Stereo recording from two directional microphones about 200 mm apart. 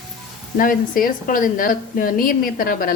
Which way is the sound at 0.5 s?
45° left (ahead or behind).